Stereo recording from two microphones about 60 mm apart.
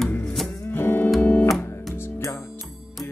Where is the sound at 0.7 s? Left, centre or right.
Left.